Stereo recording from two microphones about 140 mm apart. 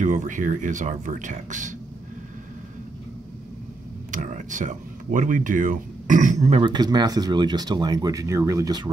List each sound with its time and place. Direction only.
0.0 s speech: 65° right (ahead or behind)
4.1 s speech: 65° right (ahead or behind)
6.6 s speech: 30° right (ahead or behind)